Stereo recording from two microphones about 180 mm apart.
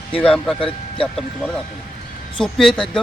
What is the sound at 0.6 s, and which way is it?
Speech, 30° left (ahead or behind).